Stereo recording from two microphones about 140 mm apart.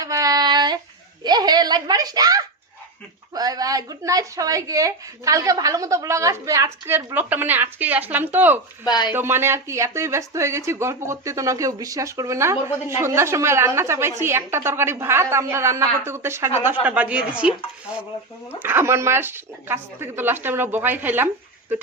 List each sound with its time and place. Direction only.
0.0 s child singing: 25° right (ahead or behind)
1.2 s a child's voice: 30° right (ahead or behind); by 8.6 s 15° right (ahead or behind)
8.8 s speech: 30° left (ahead or behind)
9.1 s speech: 15° right (ahead or behind)
18.6 s speech: 15° right (ahead or behind)